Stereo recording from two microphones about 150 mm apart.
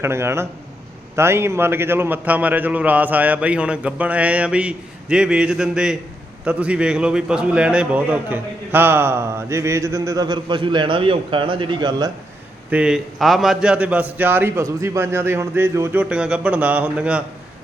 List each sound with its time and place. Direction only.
0.0 s a man's voice: 15° right (ahead or behind)
12.7 s a man's voice: 5° right (ahead or behind)